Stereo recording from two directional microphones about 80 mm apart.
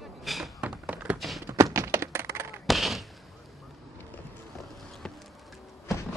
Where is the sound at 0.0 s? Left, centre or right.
Centre.